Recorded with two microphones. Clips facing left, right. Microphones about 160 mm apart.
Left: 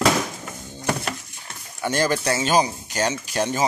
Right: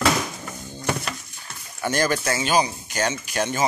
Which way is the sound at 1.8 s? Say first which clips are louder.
Left 1 dB; 25° left (ahead or behind).